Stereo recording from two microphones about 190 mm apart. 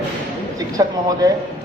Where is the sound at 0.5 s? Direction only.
20° right (ahead or behind).